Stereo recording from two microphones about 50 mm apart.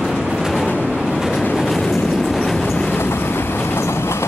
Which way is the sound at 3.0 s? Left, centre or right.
Left.